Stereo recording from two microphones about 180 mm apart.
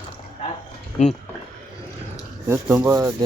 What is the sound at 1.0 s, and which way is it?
Speech, 40° left (ahead or behind).